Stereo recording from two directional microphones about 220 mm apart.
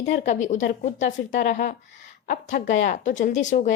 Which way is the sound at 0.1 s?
35° left (ahead or behind).